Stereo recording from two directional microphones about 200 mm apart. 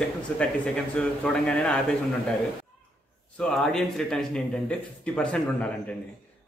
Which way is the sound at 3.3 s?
Centre (ahead or behind).